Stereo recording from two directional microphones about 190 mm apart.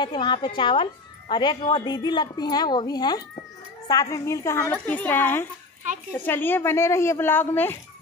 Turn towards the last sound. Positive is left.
turn(degrees=10)  # may be behind; listen again after turning